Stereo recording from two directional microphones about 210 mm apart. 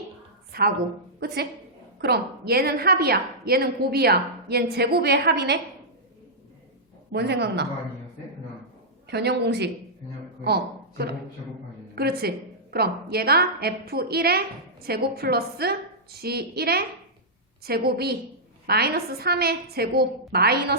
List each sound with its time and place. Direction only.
0.5 s a woman's voice: 45° right (ahead or behind)
2.0 s a woman's voice: 50° right (ahead or behind)
7.1 s a woman's voice: 50° right (ahead or behind)
9.0 s a woman's voice: 50° right (ahead or behind)